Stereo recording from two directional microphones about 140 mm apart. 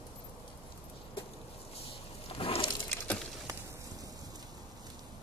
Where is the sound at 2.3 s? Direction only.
45° left (ahead or behind).